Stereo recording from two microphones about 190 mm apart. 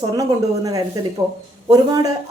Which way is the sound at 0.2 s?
20° right (ahead or behind).